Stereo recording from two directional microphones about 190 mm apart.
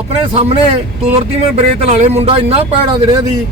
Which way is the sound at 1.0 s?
30° right (ahead or behind).